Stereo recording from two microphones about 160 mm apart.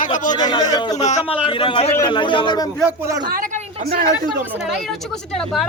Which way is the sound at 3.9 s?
60° right (ahead or behind).